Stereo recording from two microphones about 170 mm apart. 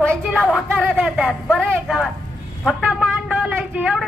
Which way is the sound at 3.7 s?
5° right (ahead or behind).